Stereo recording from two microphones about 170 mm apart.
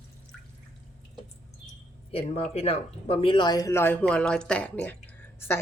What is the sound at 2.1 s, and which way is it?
Speech, 35° left (ahead or behind).